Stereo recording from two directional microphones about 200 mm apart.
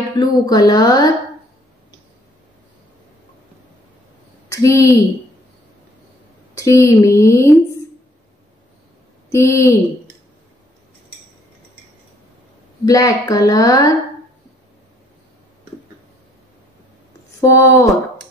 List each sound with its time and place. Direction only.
0.1 s speech: 20° left (ahead or behind)
4.5 s speech: 15° left (ahead or behind)
6.5 s a woman's voice: 15° left (ahead or behind)
9.3 s a woman's voice: 15° left (ahead or behind)
12.8 s a woman's voice: 20° left (ahead or behind)
17.4 s a woman's voice: 15° left (ahead or behind)